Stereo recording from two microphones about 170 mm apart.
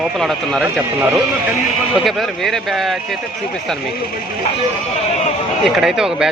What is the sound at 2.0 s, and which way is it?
Speech, centre (ahead or behind).